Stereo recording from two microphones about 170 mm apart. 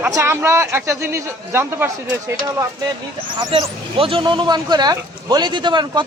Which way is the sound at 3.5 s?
30° right (ahead or behind).